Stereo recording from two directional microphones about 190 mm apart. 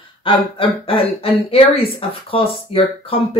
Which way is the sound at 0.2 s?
25° left (ahead or behind).